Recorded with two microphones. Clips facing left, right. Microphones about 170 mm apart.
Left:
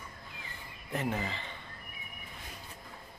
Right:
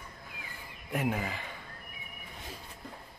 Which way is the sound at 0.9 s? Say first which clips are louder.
Right 2 dB; 10° right (ahead or behind).